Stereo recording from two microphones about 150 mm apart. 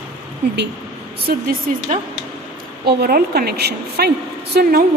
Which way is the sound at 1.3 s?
90° right.